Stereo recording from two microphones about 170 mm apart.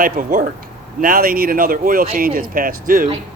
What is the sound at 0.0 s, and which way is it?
Speech, 50° right (ahead or behind).